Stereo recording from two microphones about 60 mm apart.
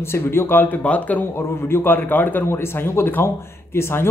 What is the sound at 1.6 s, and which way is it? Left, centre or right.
Speech, left.